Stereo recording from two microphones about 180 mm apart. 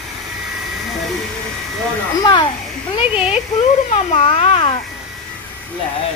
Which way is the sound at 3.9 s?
35° left (ahead or behind).